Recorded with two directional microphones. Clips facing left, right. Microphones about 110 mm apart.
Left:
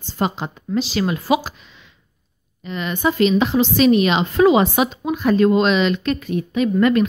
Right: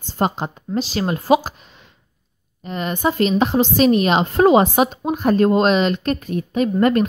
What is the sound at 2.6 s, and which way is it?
A woman's voice, 45° right (ahead or behind).